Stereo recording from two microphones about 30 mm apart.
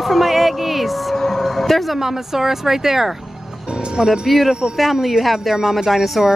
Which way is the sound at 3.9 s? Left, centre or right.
Right.